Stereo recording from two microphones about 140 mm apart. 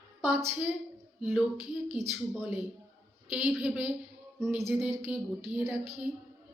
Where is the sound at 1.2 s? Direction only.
5° right (ahead or behind).